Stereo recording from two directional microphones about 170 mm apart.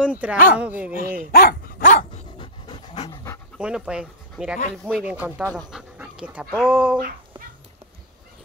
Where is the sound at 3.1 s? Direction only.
20° left (ahead or behind).